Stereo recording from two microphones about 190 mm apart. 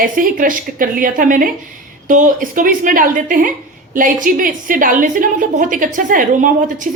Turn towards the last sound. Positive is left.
turn(degrees=-45)  # may be behind; listen again after turning